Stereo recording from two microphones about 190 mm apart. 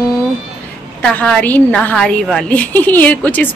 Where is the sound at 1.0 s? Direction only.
5° left (ahead or behind).